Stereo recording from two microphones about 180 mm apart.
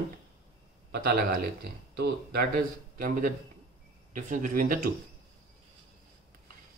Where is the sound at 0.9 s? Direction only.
60° right (ahead or behind).